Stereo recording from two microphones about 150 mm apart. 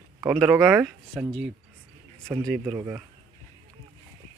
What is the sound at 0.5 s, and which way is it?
Speech, 15° right (ahead or behind).